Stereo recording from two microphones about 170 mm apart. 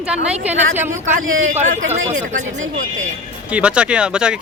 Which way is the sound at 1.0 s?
45° right (ahead or behind).